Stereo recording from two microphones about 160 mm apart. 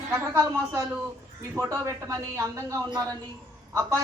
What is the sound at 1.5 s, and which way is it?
A woman's voice, 20° right (ahead or behind).